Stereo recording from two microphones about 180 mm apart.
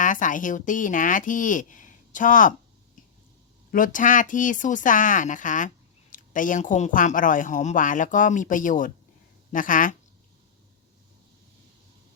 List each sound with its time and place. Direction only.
0.0 s speech: 45° left (ahead or behind)
3.7 s speech: 50° left (ahead or behind)